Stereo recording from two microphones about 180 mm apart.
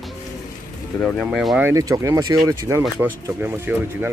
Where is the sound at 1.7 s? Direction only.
20° right (ahead or behind).